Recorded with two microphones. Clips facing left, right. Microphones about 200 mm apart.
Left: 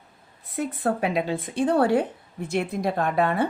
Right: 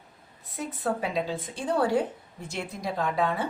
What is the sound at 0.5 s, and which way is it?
Speech, 60° left (ahead or behind).